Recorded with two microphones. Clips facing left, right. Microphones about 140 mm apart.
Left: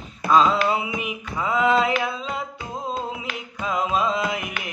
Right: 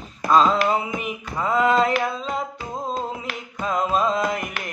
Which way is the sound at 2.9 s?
40° right (ahead or behind).